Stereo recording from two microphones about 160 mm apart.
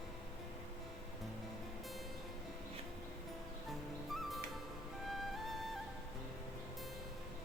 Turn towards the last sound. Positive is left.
turn(degrees=0)  # may be behind; listen again after turning